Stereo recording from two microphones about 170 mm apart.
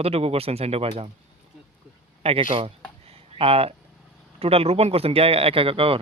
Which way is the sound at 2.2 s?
35° right (ahead or behind).